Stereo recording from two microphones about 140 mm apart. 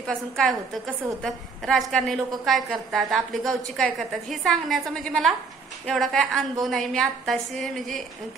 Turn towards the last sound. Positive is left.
turn(degrees=0)  # may be behind; listen again after turning